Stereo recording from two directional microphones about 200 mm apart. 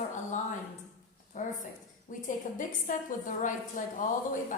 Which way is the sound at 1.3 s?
40° left (ahead or behind).